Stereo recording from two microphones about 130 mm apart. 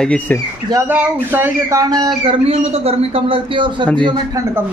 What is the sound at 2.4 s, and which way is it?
A man's voice, 50° right (ahead or behind).